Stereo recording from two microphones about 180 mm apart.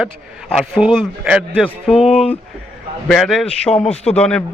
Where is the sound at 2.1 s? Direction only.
30° left (ahead or behind).